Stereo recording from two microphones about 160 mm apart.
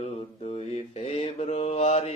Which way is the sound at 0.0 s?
40° left (ahead or behind).